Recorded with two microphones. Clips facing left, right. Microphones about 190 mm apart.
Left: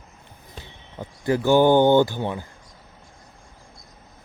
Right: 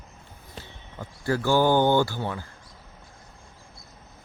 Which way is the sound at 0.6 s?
20° left (ahead or behind).